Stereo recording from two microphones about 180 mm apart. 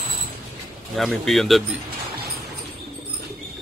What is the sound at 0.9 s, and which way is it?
Speech, centre (ahead or behind).